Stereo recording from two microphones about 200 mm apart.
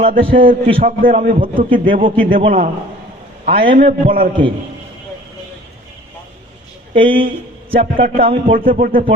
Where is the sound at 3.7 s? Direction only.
45° right (ahead or behind).